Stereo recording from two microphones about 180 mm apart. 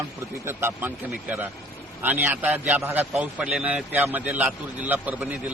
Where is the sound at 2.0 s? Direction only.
10° right (ahead or behind).